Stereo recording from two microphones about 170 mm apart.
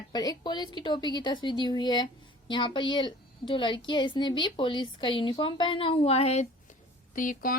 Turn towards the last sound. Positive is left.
turn(degrees=55)  # may be behind; listen again after turning